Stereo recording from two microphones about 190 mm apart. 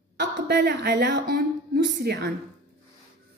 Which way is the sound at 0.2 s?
60° right (ahead or behind).